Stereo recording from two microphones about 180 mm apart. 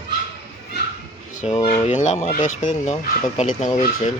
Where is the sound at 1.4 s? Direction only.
40° left (ahead or behind).